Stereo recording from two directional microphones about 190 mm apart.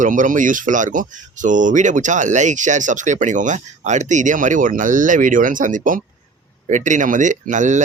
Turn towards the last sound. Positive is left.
turn(degrees=-40)  # may be behind; listen again after turning